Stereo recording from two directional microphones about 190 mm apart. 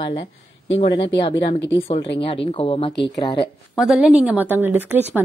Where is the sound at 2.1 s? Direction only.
30° left (ahead or behind).